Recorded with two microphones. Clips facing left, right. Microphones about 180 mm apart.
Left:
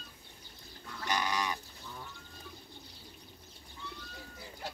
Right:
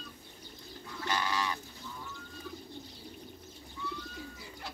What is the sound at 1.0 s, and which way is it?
Bird, 15° left (ahead or behind).